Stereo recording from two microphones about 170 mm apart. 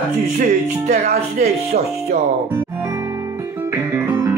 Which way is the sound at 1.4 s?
40° right (ahead or behind).